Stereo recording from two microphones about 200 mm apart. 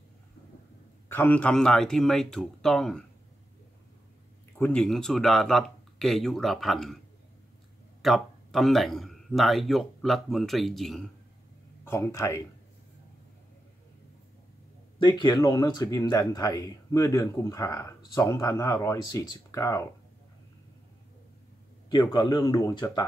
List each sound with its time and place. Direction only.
1.0 s speech: 10° left (ahead or behind)
4.6 s speech: 5° left (ahead or behind)
8.0 s speech: centre (ahead or behind)
11.8 s speech: 15° left (ahead or behind)
15.0 s speech: 20° left (ahead or behind)
21.8 s speech: 20° left (ahead or behind)